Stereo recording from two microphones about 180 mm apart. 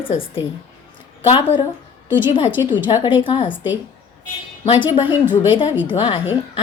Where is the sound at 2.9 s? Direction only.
25° left (ahead or behind).